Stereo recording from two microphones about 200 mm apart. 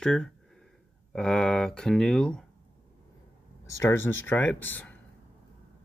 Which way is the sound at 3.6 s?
15° left (ahead or behind).